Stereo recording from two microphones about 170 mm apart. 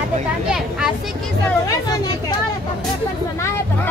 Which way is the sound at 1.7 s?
20° left (ahead or behind).